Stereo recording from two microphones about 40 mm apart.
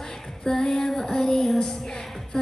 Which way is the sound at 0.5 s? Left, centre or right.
Centre.